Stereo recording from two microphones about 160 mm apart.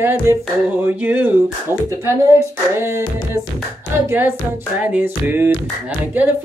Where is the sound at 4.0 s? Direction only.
15° right (ahead or behind).